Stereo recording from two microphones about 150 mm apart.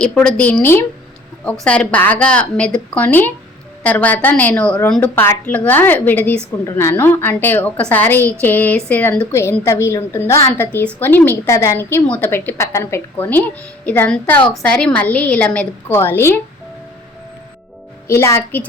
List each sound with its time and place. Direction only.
0.0 s a woman's voice: 5° left (ahead or behind)
18.1 s a woman's voice: 20° left (ahead or behind)